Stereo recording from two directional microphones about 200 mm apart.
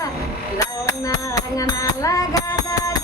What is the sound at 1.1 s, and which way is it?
Music, 15° left (ahead or behind).